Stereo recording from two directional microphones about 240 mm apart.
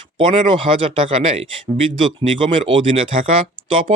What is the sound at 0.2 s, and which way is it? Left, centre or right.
Speech, right.